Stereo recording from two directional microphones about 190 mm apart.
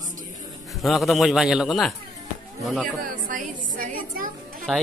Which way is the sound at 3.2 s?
45° right (ahead or behind).